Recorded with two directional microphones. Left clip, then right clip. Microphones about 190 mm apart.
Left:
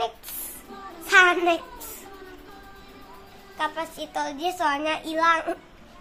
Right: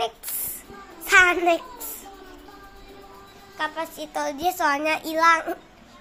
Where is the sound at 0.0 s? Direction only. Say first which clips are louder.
Right 1 dB; 15° right (ahead or behind).